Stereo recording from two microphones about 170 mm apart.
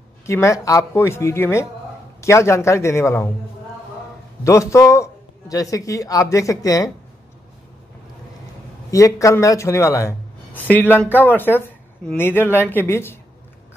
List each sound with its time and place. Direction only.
0.3 s speech: 15° left (ahead or behind)
4.5 s speech: 15° left (ahead or behind)
8.9 s speech: 20° left (ahead or behind)